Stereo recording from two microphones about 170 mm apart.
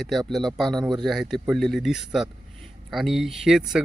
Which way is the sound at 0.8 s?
25° right (ahead or behind).